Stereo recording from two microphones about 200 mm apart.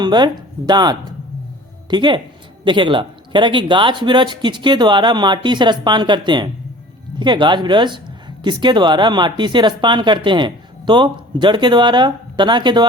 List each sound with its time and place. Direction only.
0.0 s a man's voice: 20° right (ahead or behind)